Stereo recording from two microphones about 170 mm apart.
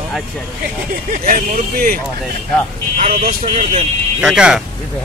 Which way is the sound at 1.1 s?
55° right (ahead or behind).